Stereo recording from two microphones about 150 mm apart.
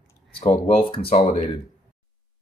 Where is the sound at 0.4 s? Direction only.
40° left (ahead or behind).